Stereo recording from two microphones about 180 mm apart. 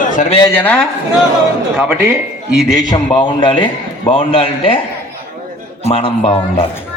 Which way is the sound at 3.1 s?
30° left (ahead or behind).